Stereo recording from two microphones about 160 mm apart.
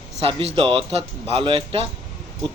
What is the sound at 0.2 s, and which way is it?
A man's voice, 35° right (ahead or behind).